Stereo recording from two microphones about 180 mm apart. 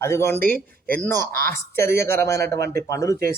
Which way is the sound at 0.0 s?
15° left (ahead or behind).